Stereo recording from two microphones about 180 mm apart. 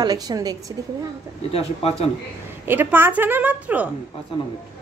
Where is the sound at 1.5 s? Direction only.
35° left (ahead or behind).